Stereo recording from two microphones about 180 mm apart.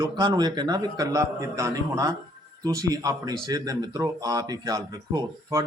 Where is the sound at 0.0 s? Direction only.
20° right (ahead or behind).